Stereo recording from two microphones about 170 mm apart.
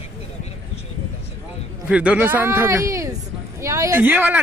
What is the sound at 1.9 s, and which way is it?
Speech, 5° right (ahead or behind).